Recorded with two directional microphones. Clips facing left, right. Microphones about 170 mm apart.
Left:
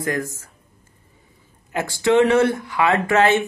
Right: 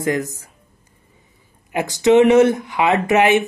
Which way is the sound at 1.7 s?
15° right (ahead or behind).